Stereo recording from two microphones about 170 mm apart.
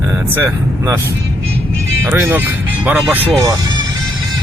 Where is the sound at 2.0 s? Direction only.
10° right (ahead or behind).